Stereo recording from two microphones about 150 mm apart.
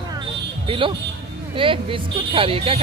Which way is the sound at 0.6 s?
35° right (ahead or behind).